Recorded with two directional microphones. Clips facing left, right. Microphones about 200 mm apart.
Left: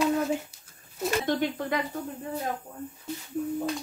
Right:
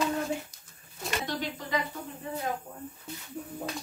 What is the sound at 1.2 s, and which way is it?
Speech, 55° left (ahead or behind).